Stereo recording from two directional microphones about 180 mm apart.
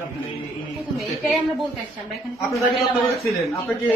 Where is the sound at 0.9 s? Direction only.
Centre (ahead or behind).